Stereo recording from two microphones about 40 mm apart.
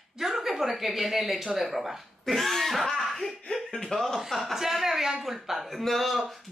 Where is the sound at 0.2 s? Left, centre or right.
Centre.